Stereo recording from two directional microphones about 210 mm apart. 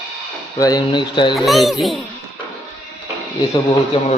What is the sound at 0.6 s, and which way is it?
Speech, 20° left (ahead or behind).